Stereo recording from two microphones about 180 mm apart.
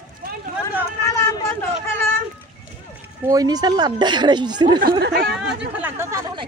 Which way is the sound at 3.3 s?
20° right (ahead or behind).